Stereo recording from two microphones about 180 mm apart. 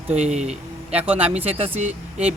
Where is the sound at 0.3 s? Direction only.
40° right (ahead or behind).